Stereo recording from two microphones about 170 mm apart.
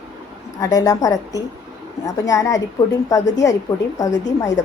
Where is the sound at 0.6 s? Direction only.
20° left (ahead or behind).